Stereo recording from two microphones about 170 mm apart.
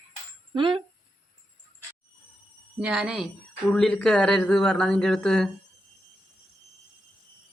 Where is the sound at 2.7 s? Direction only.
5° right (ahead or behind).